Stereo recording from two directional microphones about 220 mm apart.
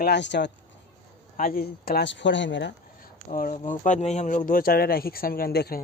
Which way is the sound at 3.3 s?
40° left (ahead or behind).